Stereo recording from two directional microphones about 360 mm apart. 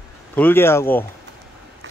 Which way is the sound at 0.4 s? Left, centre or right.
Centre.